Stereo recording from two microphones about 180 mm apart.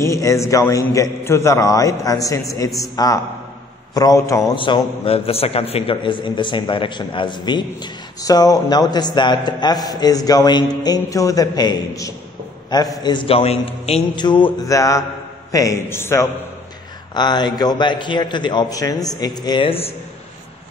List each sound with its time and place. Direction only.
0.0 s a man's voice: 15° left (ahead or behind)